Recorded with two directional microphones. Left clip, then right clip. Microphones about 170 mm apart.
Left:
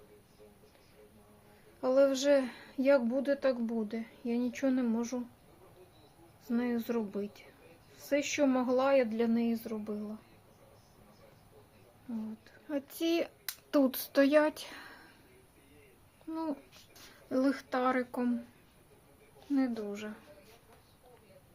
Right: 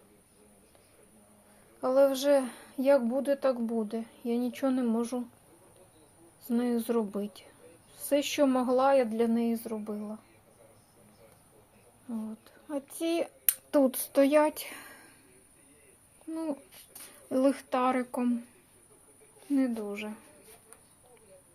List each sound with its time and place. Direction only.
1.8 s a woman's voice: 5° right (ahead or behind)
6.4 s a woman's voice: 20° right (ahead or behind)
12.6 s speech: 15° left (ahead or behind); by 14.9 s 10° right (ahead or behind)
16.3 s a woman's voice: 5° right (ahead or behind)
19.5 s a woman's voice: 10° right (ahead or behind)